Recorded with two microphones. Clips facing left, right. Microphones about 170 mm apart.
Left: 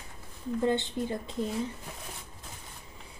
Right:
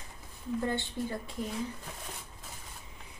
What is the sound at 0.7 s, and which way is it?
Speech, 20° left (ahead or behind).